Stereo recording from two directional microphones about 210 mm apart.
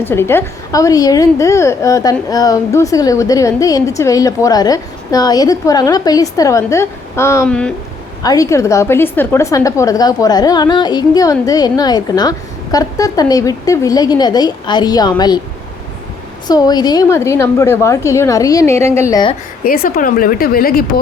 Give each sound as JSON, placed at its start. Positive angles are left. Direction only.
{"t": 0.0, "sound": "a woman's voice", "side_deg": 10}
{"t": 8.2, "sound": "a woman's voice", "side_deg": 15}
{"t": 16.5, "sound": "a woman's voice", "side_deg": 20}
{"t": 19.6, "sound": "speech", "side_deg": 45}